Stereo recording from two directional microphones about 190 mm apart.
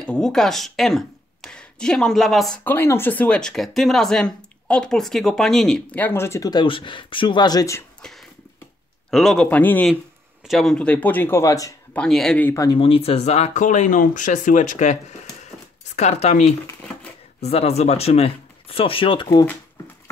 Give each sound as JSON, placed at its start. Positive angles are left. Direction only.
{"t": 0.0, "sound": "speech", "side_deg": 5}
{"t": 8.0, "sound": "a sound", "side_deg": 0}
{"t": 9.1, "sound": "speech", "side_deg": 0}
{"t": 12.0, "sound": "speech", "side_deg": 5}
{"t": 16.0, "sound": "speech", "side_deg": 35}
{"t": 16.6, "sound": "shuffling cards", "side_deg": 5}
{"t": 17.4, "sound": "speech", "side_deg": 35}